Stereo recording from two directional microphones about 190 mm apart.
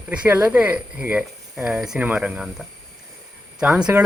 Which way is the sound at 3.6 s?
5° right (ahead or behind).